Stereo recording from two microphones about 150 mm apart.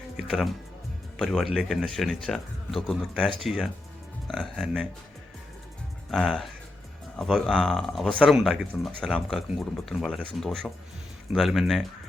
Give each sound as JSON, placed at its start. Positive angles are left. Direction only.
{"t": 0.2, "sound": "music", "side_deg": 0}
{"t": 1.2, "sound": "speech", "side_deg": 0}
{"t": 6.1, "sound": "speech", "side_deg": 5}